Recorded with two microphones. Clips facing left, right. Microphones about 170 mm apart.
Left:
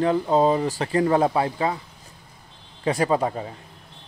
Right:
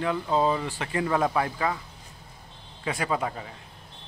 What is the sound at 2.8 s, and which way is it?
Speech, 35° left (ahead or behind).